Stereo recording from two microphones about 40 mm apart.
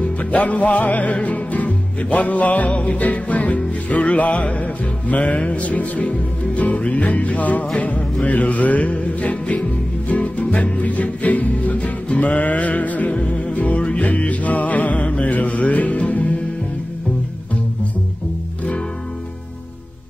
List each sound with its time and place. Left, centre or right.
0.2 s music: left